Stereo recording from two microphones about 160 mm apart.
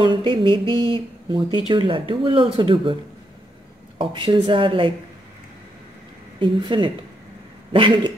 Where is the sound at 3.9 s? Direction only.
30° right (ahead or behind).